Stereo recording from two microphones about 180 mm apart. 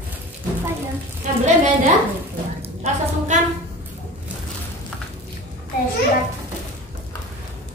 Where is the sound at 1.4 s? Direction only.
40° right (ahead or behind).